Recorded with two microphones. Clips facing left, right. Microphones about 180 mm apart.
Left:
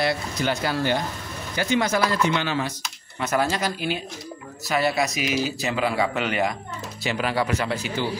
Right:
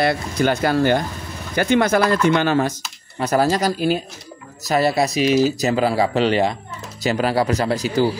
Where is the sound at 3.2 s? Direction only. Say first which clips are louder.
Right 6 dB; 35° right (ahead or behind).